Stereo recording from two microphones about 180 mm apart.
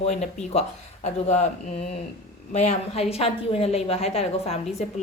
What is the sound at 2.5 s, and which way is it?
A woman's voice, 40° left (ahead or behind).